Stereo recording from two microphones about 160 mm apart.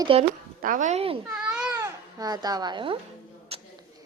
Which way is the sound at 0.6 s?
55° right (ahead or behind).